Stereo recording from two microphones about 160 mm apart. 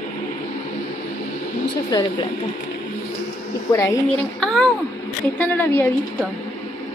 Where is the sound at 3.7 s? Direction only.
20° left (ahead or behind).